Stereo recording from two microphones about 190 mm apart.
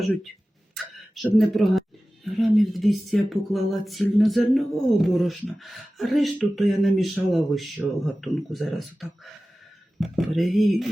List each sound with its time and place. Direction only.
0.7 s speech: centre (ahead or behind)